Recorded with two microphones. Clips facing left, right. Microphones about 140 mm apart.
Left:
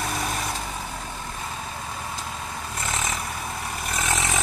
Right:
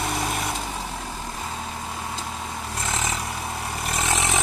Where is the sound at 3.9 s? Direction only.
25° right (ahead or behind).